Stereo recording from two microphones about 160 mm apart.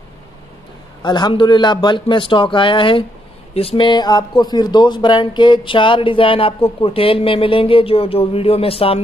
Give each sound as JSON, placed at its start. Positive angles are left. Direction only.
{"t": 1.0, "sound": "speech", "side_deg": 30}